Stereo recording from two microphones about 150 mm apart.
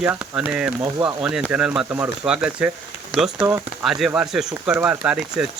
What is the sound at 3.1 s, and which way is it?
Speech, 5° left (ahead or behind).